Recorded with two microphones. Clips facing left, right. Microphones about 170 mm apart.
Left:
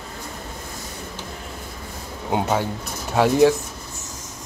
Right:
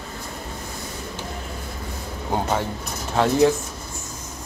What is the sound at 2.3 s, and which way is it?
Speech, 5° left (ahead or behind).